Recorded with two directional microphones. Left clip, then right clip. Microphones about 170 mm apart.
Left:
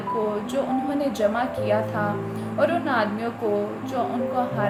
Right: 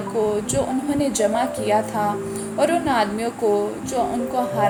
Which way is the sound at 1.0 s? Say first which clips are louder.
Right 4 dB; 30° right (ahead or behind).